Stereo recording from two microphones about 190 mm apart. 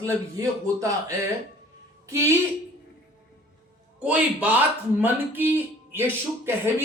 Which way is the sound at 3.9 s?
5° right (ahead or behind).